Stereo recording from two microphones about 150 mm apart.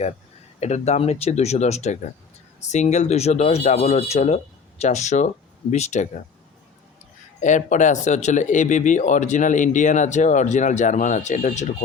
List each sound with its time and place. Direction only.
0.6 s speech: 45° left (ahead or behind)
7.4 s speech: 55° left (ahead or behind)